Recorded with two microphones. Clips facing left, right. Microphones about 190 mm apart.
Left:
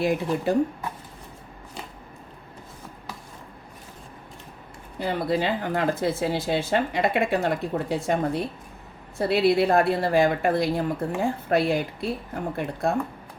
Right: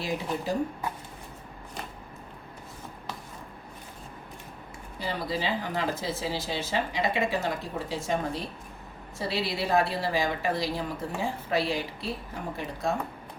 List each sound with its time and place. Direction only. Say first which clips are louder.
0.0 s speech: left 7 dB; 60° left (ahead or behind)
4.9 s speech: left 7 dB; 55° left (ahead or behind)